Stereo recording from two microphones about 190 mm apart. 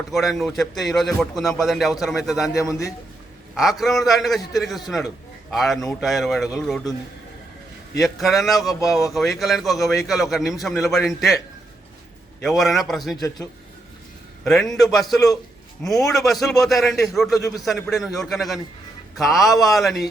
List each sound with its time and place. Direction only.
0.1 s a man's voice: centre (ahead or behind)
2.6 s a man's voice: 15° left (ahead or behind)
3.5 s a man's voice: centre (ahead or behind)
7.9 s a man's voice: centre (ahead or behind)
8.9 s a man's voice: 15° left (ahead or behind)
9.1 s a man's voice: centre (ahead or behind)
12.4 s a man's voice: centre (ahead or behind)
14.4 s a man's voice: centre (ahead or behind)